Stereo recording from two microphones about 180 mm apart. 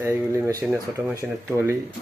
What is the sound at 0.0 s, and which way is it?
Speech, 15° right (ahead or behind).